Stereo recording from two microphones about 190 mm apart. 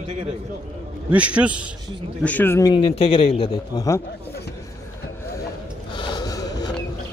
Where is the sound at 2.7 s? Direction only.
30° left (ahead or behind).